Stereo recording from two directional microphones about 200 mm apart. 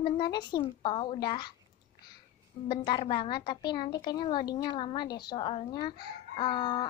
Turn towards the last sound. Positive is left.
turn(degrees=20)  # may be behind; listen again after turning